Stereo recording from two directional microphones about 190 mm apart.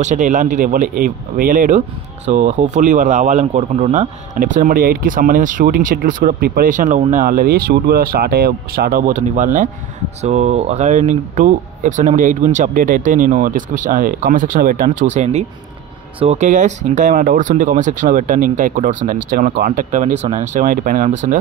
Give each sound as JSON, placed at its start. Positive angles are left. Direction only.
{"t": 0.0, "sound": "speech", "side_deg": -40}